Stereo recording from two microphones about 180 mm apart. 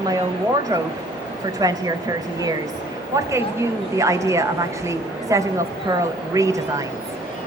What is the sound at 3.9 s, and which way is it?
A woman's voice, 15° right (ahead or behind).